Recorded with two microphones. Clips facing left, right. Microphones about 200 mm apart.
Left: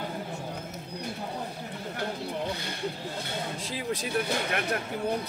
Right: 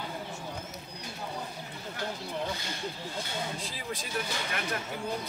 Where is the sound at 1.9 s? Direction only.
60° left (ahead or behind).